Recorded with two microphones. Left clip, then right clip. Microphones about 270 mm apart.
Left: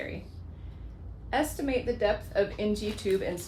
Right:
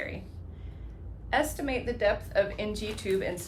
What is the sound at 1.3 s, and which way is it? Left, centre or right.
A woman's voice, right.